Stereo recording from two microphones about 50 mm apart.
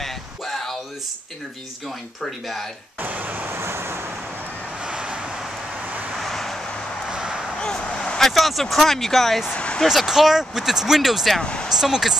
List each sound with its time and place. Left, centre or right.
0.0 s a sound: centre
3.0 s speech: right
3.4 s vehicle: right
4.8 s vehicle: right
6.1 s vehicle: centre
7.1 s a sound: centre
7.6 s a sound: centre
8.2 s speech: centre
9.6 s a sound: centre
9.8 s speech: centre
11.4 s speech: centre
11.7 s speech: centre